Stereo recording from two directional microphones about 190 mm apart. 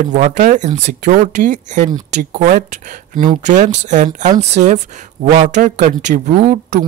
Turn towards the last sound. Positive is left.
turn(degrees=-35)  # may be behind; listen again after turning